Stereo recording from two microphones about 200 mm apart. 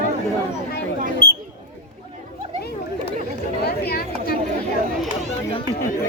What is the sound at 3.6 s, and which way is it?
Chatter, 50° left (ahead or behind).